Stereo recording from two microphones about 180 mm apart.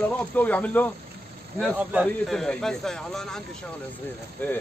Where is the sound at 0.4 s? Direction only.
10° left (ahead or behind).